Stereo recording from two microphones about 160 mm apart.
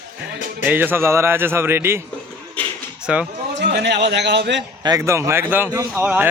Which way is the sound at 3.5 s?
90° right.